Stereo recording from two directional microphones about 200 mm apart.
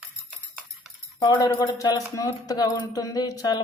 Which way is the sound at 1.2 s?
20° left (ahead or behind).